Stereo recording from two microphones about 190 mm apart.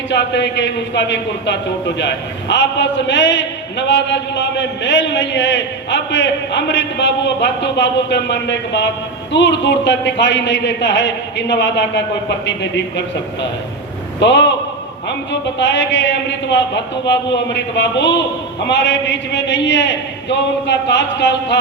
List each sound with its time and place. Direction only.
0.1 s a man's voice: 65° left (ahead or behind)
14.2 s a man's voice: 65° left (ahead or behind)